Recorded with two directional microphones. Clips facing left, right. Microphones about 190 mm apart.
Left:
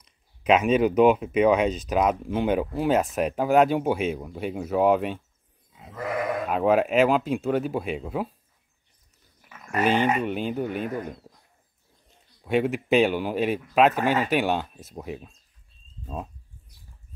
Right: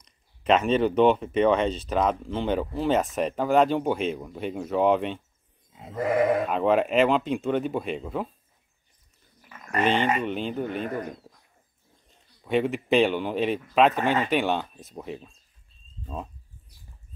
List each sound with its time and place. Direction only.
0.0 s speech: 5° left (ahead or behind)
5.7 s sheep: 25° right (ahead or behind)
6.5 s speech: 5° left (ahead or behind)
9.5 s speech: 5° left (ahead or behind)
12.4 s speech: 5° left (ahead or behind)